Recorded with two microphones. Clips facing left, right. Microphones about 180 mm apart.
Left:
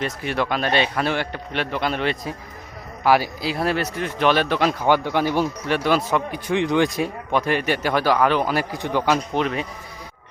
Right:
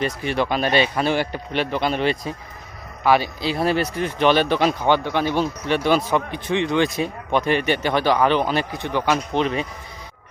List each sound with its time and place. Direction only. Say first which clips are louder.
0.0 s speech: right 2 dB; centre (ahead or behind)
3.4 s speech: right 2 dB; centre (ahead or behind)
6.7 s a man's voice: left 1 dB; 15° left (ahead or behind)
7.3 s speech: right 2 dB; 5° left (ahead or behind)
8.7 s a man's voice: left 1 dB; 15° left (ahead or behind)